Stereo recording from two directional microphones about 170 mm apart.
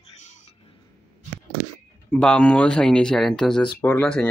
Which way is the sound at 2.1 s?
5° left (ahead or behind).